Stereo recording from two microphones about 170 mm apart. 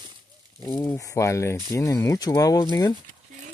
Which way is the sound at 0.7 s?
15° left (ahead or behind).